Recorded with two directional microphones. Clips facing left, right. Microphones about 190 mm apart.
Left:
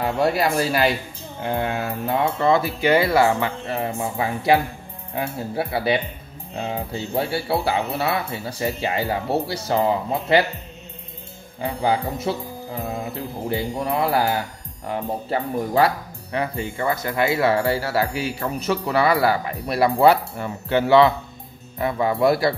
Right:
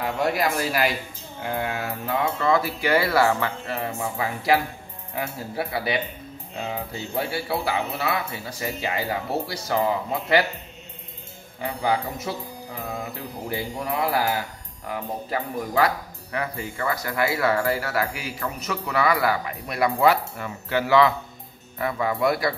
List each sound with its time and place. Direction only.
0.0 s speech: 30° left (ahead or behind)
11.6 s speech: 30° left (ahead or behind)
13.5 s speech: 25° left (ahead or behind)